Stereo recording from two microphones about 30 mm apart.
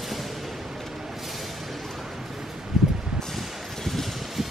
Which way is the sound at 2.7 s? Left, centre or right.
Centre.